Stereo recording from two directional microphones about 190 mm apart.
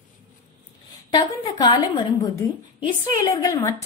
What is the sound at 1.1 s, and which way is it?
Speech, 25° left (ahead or behind).